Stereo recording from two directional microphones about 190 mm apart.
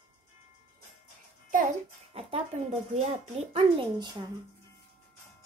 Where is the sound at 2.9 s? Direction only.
35° right (ahead or behind).